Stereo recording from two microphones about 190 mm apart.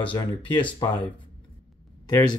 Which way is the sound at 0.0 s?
25° left (ahead or behind).